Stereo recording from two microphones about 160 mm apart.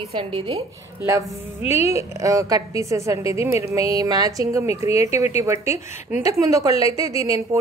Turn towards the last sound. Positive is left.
turn(degrees=-20)  # may be behind; listen again after turning